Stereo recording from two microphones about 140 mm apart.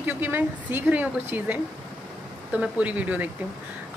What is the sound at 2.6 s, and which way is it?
Speech, 10° right (ahead or behind).